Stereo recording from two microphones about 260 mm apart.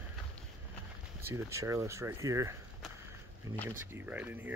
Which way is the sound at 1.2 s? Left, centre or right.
Centre.